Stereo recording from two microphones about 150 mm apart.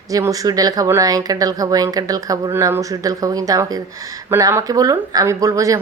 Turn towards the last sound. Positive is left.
turn(degrees=-20)  # may be behind; listen again after turning